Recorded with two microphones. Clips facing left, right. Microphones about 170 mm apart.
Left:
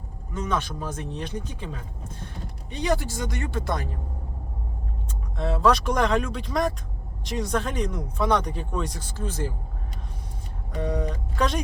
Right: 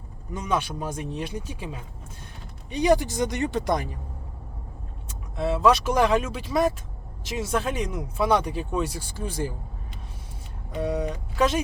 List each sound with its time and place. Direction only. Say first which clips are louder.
0.3 s speech: right 1 dB; 10° right (ahead or behind)
5.4 s speech: right 1 dB; 5° right (ahead or behind)
10.8 s speech: right 1 dB; 5° right (ahead or behind)